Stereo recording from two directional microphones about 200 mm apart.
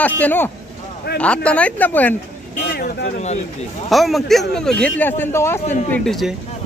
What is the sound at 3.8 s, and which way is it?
Speech, centre (ahead or behind).